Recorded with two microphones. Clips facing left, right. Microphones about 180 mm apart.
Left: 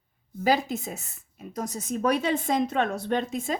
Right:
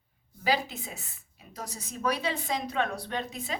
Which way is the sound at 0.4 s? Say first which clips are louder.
Left 5 dB; 45° left (ahead or behind).